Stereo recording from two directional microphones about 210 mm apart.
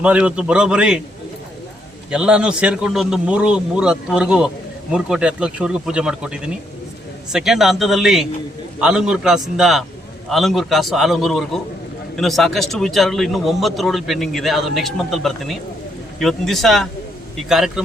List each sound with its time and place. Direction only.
0.0 s a man's voice: 5° right (ahead or behind)
2.0 s a man's voice: 5° right (ahead or behind)